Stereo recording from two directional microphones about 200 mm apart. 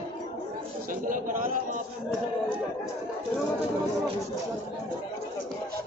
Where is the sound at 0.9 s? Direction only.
40° right (ahead or behind).